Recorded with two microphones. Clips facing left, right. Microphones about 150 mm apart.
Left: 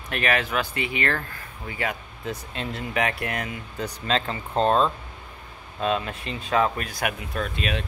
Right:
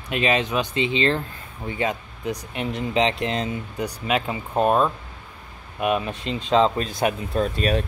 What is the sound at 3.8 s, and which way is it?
Speech, 15° right (ahead or behind).